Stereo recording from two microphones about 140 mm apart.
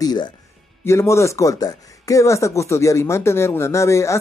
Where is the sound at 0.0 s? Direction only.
30° left (ahead or behind).